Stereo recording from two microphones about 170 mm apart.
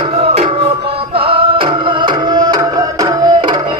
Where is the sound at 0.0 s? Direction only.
35° right (ahead or behind).